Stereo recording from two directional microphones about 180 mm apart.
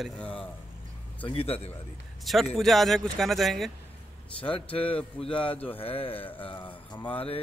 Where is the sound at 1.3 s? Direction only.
35° left (ahead or behind).